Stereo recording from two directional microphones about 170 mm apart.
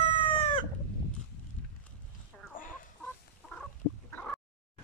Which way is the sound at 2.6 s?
55° left (ahead or behind).